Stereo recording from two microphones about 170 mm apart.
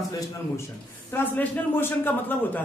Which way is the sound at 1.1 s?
15° left (ahead or behind).